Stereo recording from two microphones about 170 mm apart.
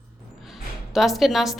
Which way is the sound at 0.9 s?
Centre (ahead or behind).